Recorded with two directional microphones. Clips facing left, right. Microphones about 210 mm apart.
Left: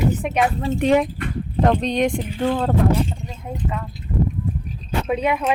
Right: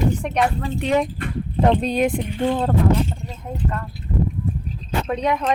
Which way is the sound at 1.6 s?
5° right (ahead or behind).